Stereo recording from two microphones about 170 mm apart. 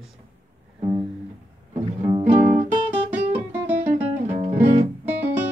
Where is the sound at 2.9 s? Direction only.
10° right (ahead or behind).